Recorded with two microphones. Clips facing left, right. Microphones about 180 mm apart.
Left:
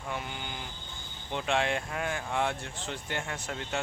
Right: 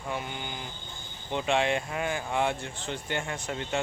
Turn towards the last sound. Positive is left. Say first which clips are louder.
# right 3 dB
turn(degrees=0)  # may be behind; listen again after turning